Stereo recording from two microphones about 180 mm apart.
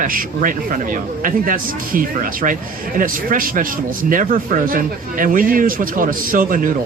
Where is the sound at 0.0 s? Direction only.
50° right (ahead or behind).